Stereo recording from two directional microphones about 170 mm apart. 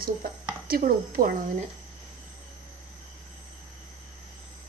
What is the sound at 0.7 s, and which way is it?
Speech, 60° right (ahead or behind).